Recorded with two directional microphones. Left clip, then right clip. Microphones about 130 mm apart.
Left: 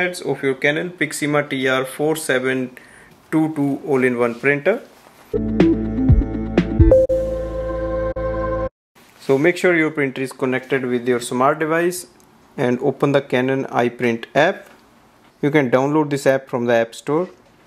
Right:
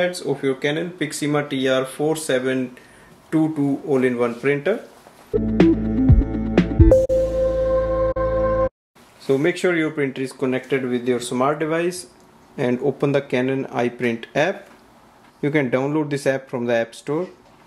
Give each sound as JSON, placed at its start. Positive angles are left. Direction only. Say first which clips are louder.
{"t": 0.0, "sound": "speech", "louder": "left 1 dB", "side_deg": 30}
{"t": 5.3, "sound": "music", "louder": "even", "side_deg": 0}
{"t": 9.3, "sound": "speech", "louder": "left 4 dB", "side_deg": 30}